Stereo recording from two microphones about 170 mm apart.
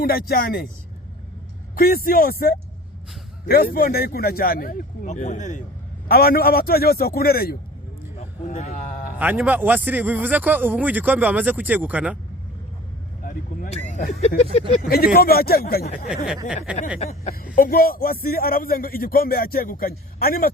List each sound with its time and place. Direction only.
0.0 s a man's voice: 60° left (ahead or behind)
1.7 s a man's voice: 60° left (ahead or behind)
6.1 s a man's voice: 60° left (ahead or behind)
8.1 s vehicle: 40° left (ahead or behind)
9.1 s speech: 10° right (ahead or behind)
13.2 s vehicle: 50° left (ahead or behind)
14.8 s a man's voice: 60° left (ahead or behind)
16.0 s a sound: 5° right (ahead or behind)
17.3 s a man's voice: 55° left (ahead or behind)